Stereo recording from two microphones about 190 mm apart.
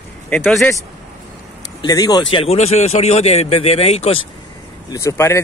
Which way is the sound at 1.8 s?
20° left (ahead or behind).